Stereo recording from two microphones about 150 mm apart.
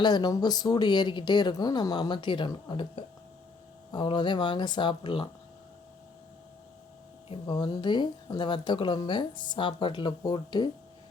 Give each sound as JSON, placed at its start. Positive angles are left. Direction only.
{"t": 0.0, "sound": "speech", "side_deg": 30}
{"t": 7.3, "sound": "speech", "side_deg": 30}